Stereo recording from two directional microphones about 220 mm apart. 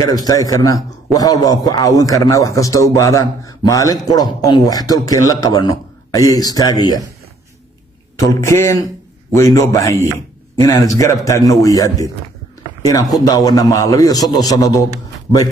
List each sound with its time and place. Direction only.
0.0 s a man's voice: 15° left (ahead or behind)
8.2 s a man's voice: 10° left (ahead or behind)